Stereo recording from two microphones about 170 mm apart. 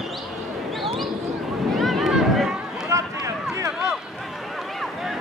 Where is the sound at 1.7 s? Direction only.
Centre (ahead or behind).